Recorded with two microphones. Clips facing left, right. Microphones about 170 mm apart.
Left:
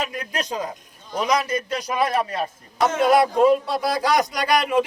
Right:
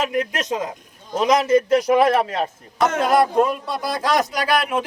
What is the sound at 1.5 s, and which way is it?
Speech, 60° right (ahead or behind).